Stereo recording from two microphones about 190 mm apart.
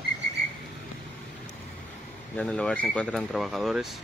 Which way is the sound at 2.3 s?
5° left (ahead or behind).